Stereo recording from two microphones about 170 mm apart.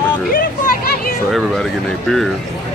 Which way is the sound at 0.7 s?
60° left (ahead or behind).